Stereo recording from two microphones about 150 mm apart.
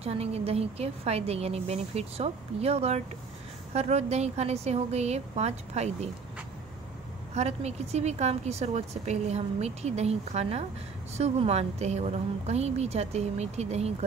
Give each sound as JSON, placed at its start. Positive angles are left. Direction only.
{"t": 0.0, "sound": "a woman's voice", "side_deg": -45}
{"t": 7.3, "sound": "a woman's voice", "side_deg": -45}